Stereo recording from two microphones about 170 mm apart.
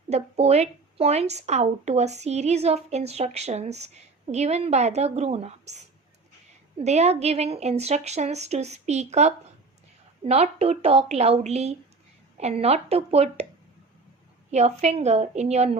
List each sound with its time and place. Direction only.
0.1 s a woman's voice: 40° right (ahead or behind)
6.7 s a woman's voice: 40° right (ahead or behind)
14.5 s a woman's voice: 40° right (ahead or behind)